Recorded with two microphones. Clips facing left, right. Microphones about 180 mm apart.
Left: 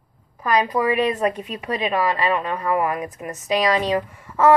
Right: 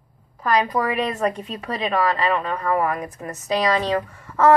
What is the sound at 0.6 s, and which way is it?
Speech, 15° left (ahead or behind).